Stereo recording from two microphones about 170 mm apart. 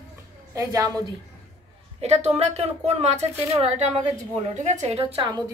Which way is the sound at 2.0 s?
40° right (ahead or behind).